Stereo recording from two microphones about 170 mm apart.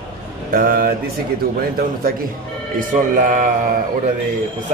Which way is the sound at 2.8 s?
50° right (ahead or behind).